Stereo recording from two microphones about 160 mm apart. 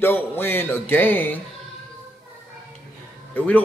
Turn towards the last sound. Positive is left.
turn(degrees=10)  # may be behind; listen again after turning